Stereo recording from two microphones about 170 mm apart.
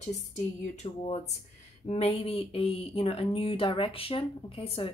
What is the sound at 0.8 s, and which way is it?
Speech, 40° left (ahead or behind).